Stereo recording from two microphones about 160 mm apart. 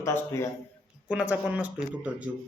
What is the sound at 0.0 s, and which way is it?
Speech, 15° left (ahead or behind).